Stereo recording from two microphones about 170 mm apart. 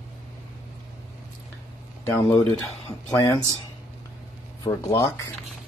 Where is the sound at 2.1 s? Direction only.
20° left (ahead or behind).